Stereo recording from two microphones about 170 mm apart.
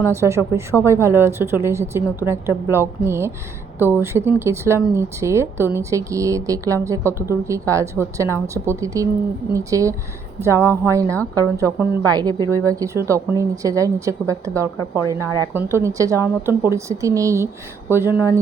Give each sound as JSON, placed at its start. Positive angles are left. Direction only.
{"t": 0.1, "sound": "a woman's voice", "side_deg": -15}